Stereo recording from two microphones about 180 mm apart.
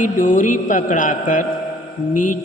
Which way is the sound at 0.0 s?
45° left (ahead or behind).